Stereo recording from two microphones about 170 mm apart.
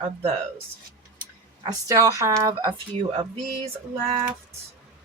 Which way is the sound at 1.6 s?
20° right (ahead or behind).